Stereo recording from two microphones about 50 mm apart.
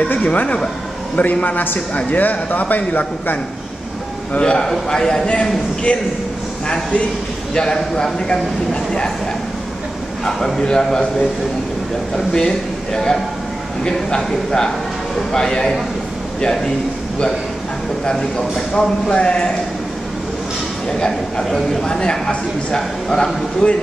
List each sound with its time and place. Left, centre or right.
0.0 s speech: left
4.4 s speech: centre
7.5 s speech: centre
10.2 s speech: centre
12.3 s speech: centre
18.7 s speech: centre
21.5 s speech: centre